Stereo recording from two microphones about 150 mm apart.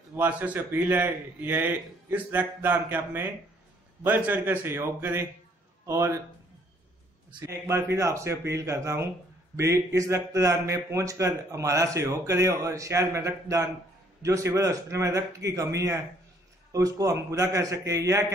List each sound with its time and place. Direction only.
0.1 s a man's voice: 10° right (ahead or behind)
7.3 s a man's voice: 20° right (ahead or behind)